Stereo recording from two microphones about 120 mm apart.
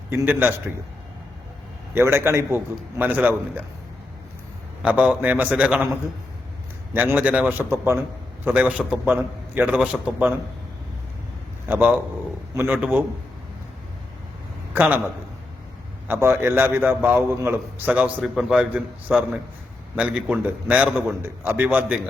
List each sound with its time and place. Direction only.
0.1 s a man's voice: 20° right (ahead or behind)
2.0 s a man's voice: 20° right (ahead or behind)
4.8 s a man's voice: 10° right (ahead or behind)
6.9 s a man's voice: 15° right (ahead or behind)
11.7 s a man's voice: 10° right (ahead or behind)
14.7 s a man's voice: 15° right (ahead or behind)
16.0 s a man's voice: 20° right (ahead or behind)
18.2 s a man's voice: 5° right (ahead or behind)